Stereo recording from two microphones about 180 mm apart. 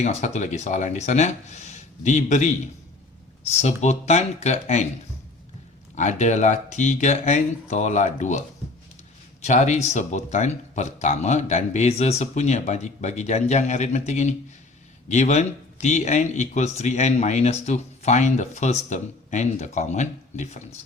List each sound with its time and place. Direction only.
0.0 s speech: 40° left (ahead or behind)
3.5 s speech: 40° left (ahead or behind)
6.0 s speech: 40° left (ahead or behind)
9.4 s speech: 40° left (ahead or behind)